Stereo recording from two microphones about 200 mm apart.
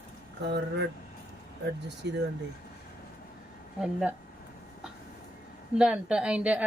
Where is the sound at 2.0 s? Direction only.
55° right (ahead or behind).